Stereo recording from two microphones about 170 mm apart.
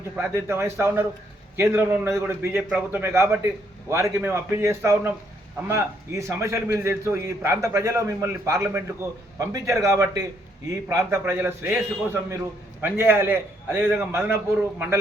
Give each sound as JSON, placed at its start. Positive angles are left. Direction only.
{"t": 0.2, "sound": "a man's voice", "side_deg": -15}